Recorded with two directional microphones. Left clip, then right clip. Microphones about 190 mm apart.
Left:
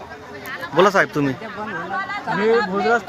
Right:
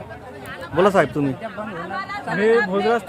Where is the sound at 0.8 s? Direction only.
5° right (ahead or behind).